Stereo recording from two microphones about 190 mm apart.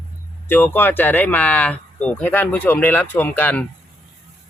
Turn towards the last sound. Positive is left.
turn(degrees=10)  # may be behind; listen again after turning